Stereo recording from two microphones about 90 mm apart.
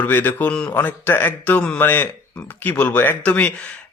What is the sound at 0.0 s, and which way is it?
Speech, 20° left (ahead or behind).